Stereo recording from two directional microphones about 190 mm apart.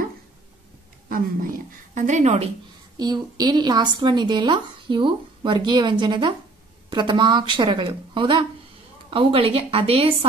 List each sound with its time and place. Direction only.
1.0 s speech: 50° right (ahead or behind)
3.0 s speech: 20° right (ahead or behind)